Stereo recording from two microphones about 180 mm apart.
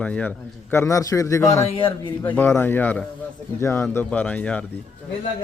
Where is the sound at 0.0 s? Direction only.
5° left (ahead or behind).